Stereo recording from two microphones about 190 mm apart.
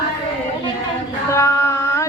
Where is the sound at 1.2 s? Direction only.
15° left (ahead or behind).